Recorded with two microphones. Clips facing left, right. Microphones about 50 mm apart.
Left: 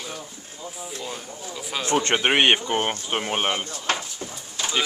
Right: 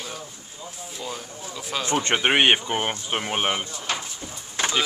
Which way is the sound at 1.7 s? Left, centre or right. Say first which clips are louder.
Left 1 dB; centre.